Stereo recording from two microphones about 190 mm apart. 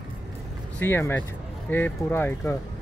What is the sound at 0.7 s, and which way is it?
Speech, 10° left (ahead or behind).